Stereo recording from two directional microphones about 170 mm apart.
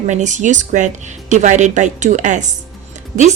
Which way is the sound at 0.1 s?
45° right (ahead or behind).